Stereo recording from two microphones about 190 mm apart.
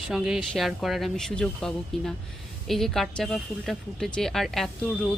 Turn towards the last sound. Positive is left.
turn(degrees=5)  # may be behind; listen again after turning